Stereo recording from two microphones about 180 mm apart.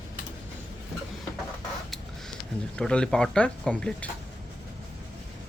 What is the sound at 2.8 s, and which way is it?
Speech, 5° left (ahead or behind).